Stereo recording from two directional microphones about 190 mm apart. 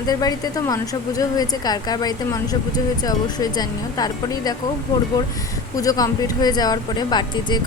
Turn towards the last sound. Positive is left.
turn(degrees=20)  # may be behind; listen again after turning